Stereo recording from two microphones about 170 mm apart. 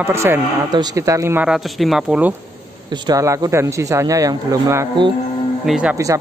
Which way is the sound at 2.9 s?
20° right (ahead or behind).